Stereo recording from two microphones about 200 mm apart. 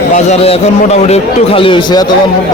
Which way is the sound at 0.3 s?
30° left (ahead or behind).